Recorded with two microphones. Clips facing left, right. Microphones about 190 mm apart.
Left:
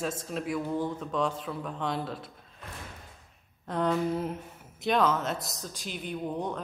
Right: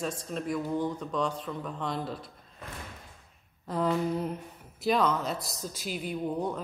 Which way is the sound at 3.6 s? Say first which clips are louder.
Even; centre (ahead or behind).